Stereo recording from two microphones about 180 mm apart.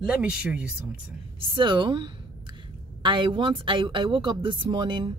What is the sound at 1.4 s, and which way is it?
Speech, 25° right (ahead or behind).